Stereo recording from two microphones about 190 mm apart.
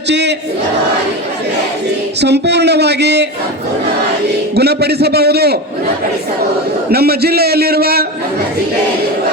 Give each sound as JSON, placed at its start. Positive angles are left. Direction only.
{"t": 0.1, "sound": "battle cry", "side_deg": -65}
{"t": 2.2, "sound": "a man's voice", "side_deg": -60}
{"t": 4.5, "sound": "a man's voice", "side_deg": -60}
{"t": 6.9, "sound": "a man's voice", "side_deg": -55}